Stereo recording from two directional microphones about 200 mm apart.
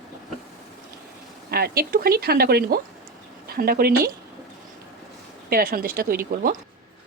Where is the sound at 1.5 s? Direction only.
50° right (ahead or behind).